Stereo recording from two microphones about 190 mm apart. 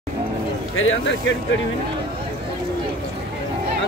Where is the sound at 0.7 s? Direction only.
85° left.